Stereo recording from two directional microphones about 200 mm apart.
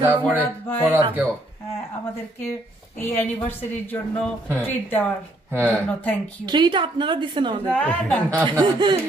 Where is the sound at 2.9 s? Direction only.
10° left (ahead or behind).